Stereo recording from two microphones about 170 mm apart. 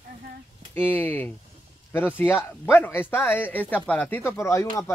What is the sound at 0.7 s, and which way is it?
Speech, 10° left (ahead or behind).